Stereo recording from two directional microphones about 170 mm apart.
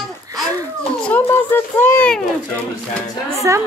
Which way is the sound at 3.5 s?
15° right (ahead or behind).